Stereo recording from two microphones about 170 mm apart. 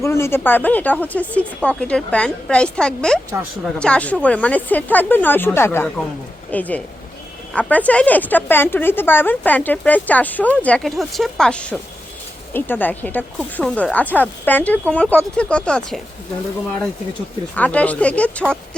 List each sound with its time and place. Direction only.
0.0 s speech: 15° left (ahead or behind)
17.5 s speech: 10° left (ahead or behind)